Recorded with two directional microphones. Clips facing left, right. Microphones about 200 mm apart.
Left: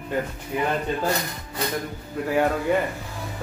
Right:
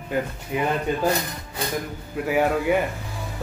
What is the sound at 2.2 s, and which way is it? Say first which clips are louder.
Speech: right 1 dB; 10° right (ahead or behind).